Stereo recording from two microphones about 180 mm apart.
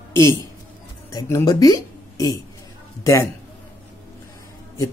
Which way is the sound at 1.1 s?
15° left (ahead or behind).